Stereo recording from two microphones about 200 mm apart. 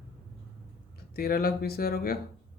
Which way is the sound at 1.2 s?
50° left (ahead or behind).